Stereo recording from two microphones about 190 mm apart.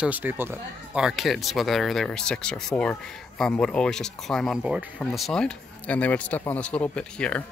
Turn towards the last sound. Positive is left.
turn(degrees=5)  # may be behind; listen again after turning